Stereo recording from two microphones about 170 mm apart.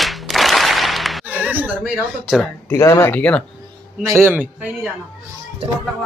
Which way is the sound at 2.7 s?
15° left (ahead or behind).